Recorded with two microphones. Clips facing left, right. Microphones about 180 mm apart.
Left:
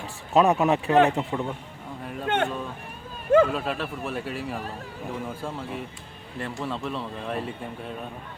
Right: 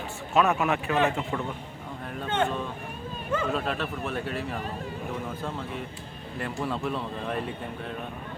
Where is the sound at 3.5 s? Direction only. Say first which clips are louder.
Even; 5° left (ahead or behind).